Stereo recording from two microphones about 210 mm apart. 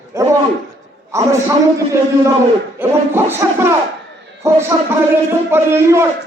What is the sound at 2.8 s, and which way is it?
A man's voice, 10° right (ahead or behind).